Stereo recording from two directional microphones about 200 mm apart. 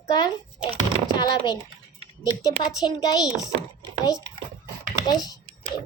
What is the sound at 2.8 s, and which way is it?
Speech, 20° left (ahead or behind).